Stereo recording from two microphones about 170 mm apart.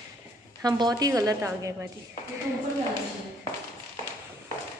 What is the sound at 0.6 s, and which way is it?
A woman's voice, 25° right (ahead or behind).